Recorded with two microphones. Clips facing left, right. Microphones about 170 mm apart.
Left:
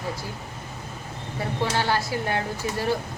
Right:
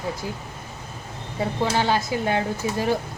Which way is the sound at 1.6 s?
15° right (ahead or behind).